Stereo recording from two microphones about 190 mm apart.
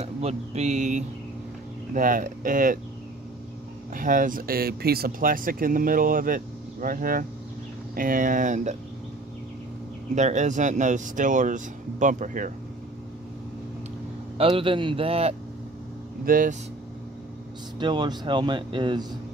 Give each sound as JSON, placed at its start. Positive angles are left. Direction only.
{"t": 0.0, "sound": "speech", "side_deg": -35}
{"t": 3.9, "sound": "speech", "side_deg": -45}
{"t": 10.1, "sound": "speech", "side_deg": -40}
{"t": 14.4, "sound": "speech", "side_deg": -25}
{"t": 16.3, "sound": "speech", "side_deg": -45}
{"t": 17.7, "sound": "speech", "side_deg": -25}